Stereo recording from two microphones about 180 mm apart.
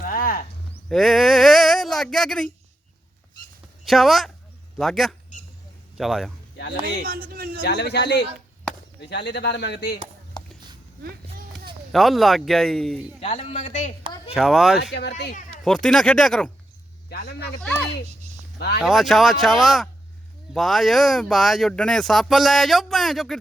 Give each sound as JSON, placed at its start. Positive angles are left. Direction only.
{"t": 0.0, "sound": "a sound", "side_deg": 55}
{"t": 0.9, "sound": "a sound", "side_deg": 0}
{"t": 3.8, "sound": "speech", "side_deg": 0}
{"t": 6.6, "sound": "speech", "side_deg": 70}
{"t": 7.0, "sound": "speech", "side_deg": -55}
{"t": 7.6, "sound": "speech", "side_deg": 70}
{"t": 11.9, "sound": "speech", "side_deg": 0}
{"t": 13.1, "sound": "a man's voice", "side_deg": 35}
{"t": 14.3, "sound": "speech", "side_deg": 0}
{"t": 17.1, "sound": "speech", "side_deg": 60}
{"t": 18.8, "sound": "speech", "side_deg": 0}